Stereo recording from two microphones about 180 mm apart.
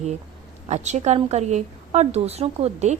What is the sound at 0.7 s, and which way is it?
A woman's voice, 40° right (ahead or behind).